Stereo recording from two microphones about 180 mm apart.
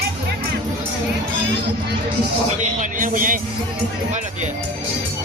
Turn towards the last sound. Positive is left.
turn(degrees=-50)  # may be behind; listen again after turning